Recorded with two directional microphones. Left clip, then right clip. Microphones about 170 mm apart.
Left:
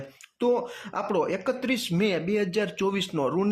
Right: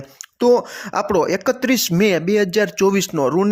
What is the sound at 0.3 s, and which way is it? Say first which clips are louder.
Speech: right 10 dB; 40° right (ahead or behind).